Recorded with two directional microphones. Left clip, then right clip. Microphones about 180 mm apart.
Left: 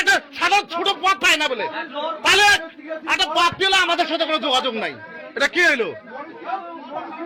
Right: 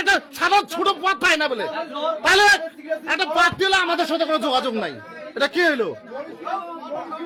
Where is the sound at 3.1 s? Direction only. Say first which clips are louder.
Left 1 dB; 50° right (ahead or behind).